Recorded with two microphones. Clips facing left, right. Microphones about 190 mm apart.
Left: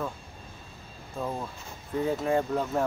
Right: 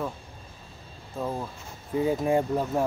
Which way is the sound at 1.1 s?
5° right (ahead or behind).